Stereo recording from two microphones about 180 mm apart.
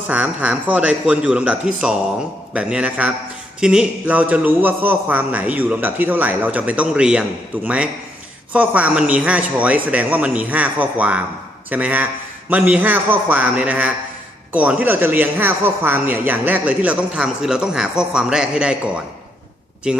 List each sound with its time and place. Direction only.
0.1 s a man's voice: 10° right (ahead or behind)